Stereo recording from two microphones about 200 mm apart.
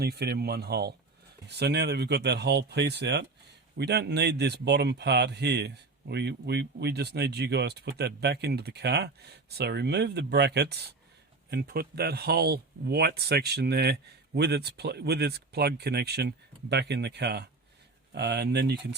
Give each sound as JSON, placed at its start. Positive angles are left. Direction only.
{"t": 0.0, "sound": "speech", "side_deg": -55}